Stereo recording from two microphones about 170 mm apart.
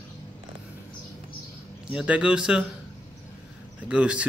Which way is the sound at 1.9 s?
10° right (ahead or behind).